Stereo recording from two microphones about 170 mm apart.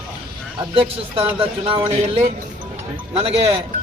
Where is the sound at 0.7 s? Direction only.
30° right (ahead or behind).